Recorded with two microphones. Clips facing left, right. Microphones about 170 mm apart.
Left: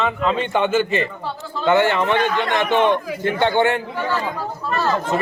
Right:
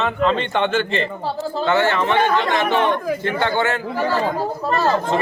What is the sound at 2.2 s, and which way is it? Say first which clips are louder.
Speech: right 2 dB; 50° right (ahead or behind).